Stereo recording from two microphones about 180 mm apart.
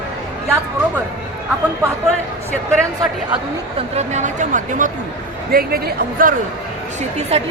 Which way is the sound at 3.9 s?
40° right (ahead or behind).